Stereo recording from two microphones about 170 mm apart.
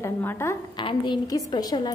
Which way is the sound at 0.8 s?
30° left (ahead or behind).